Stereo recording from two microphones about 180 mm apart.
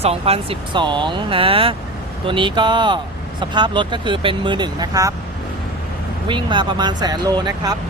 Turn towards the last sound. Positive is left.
turn(degrees=-20)  # may be behind; listen again after turning